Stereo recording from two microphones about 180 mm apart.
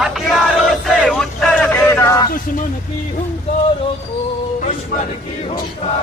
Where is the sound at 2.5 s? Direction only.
45° left (ahead or behind).